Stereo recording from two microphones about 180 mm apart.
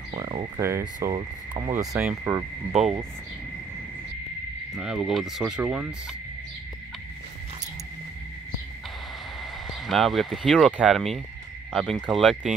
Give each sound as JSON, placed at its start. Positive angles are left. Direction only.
{"t": 0.2, "sound": "speech", "side_deg": -25}
{"t": 2.0, "sound": "speech", "side_deg": -10}
{"t": 4.7, "sound": "speech", "side_deg": -5}
{"t": 9.4, "sound": "speech", "side_deg": 0}